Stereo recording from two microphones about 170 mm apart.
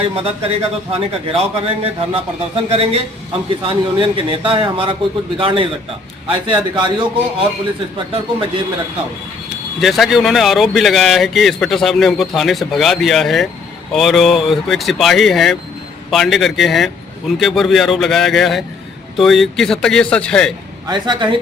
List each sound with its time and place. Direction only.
0.0 s a man's voice: 35° right (ahead or behind)
9.8 s a man's voice: centre (ahead or behind)
20.8 s a man's voice: 25° right (ahead or behind)